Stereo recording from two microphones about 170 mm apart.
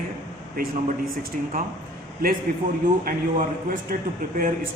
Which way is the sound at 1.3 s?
50° right (ahead or behind).